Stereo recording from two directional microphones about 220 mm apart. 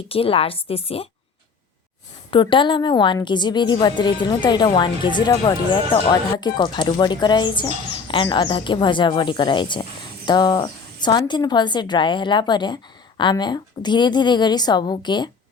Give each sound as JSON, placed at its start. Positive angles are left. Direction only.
{"t": 0.1, "sound": "a woman's voice", "side_deg": 25}
{"t": 2.3, "sound": "a woman's voice", "side_deg": 20}